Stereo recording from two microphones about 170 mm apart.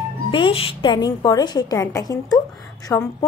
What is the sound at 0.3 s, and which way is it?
A woman's voice, 30° left (ahead or behind).